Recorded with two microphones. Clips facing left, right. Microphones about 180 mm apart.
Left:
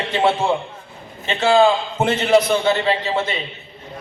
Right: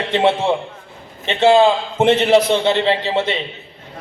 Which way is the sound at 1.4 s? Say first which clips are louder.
Right 3 dB; 20° right (ahead or behind).